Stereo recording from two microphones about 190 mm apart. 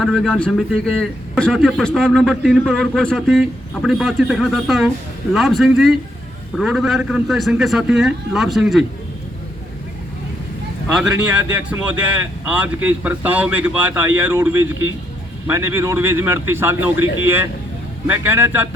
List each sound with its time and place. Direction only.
0.0 s a man's voice: centre (ahead or behind)
10.9 s speech: 5° right (ahead or behind)